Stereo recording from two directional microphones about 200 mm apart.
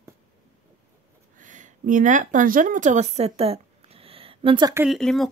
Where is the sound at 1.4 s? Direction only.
40° right (ahead or behind).